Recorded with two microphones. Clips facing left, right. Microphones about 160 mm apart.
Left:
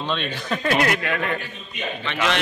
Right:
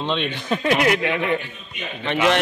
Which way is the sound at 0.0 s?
20° right (ahead or behind).